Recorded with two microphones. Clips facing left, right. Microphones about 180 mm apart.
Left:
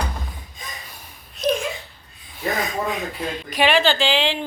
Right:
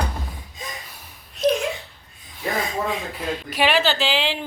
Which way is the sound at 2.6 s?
30° right (ahead or behind).